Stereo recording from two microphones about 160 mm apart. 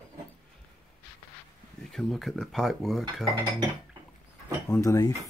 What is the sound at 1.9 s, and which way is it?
Speech, centre (ahead or behind).